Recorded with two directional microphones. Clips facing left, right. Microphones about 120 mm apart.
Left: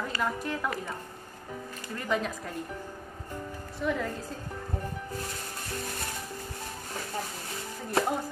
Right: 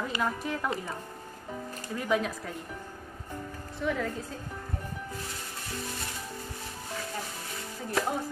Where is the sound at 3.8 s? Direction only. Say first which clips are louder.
Even; centre (ahead or behind).